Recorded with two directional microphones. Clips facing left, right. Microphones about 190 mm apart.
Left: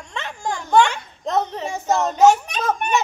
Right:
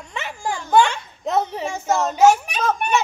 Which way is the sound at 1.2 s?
10° right (ahead or behind).